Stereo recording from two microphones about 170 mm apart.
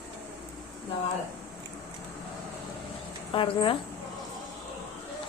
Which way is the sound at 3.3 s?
30° left (ahead or behind).